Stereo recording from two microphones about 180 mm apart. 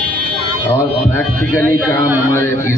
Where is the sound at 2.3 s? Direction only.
15° left (ahead or behind).